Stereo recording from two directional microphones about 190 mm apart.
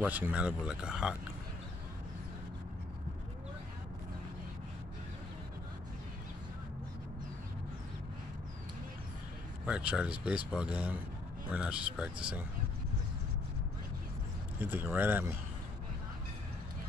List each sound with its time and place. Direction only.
0.0 s speech: 10° right (ahead or behind)
9.7 s speech: 5° right (ahead or behind)
14.6 s speech: 10° right (ahead or behind)